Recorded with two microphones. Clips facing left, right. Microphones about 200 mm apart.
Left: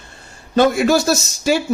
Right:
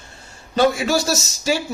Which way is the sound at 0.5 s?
55° left (ahead or behind).